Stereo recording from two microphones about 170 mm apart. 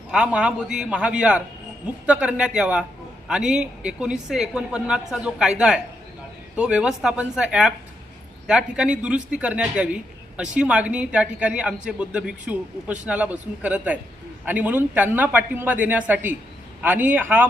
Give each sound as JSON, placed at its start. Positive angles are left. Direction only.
{"t": 0.1, "sound": "speech", "side_deg": -5}